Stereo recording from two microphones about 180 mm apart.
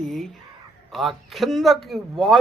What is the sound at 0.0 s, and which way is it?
Speech, centre (ahead or behind).